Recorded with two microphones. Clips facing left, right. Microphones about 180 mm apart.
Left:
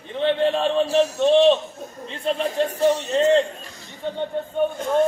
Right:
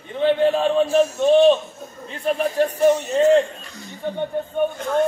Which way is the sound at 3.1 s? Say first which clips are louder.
Right 2 dB; 10° right (ahead or behind).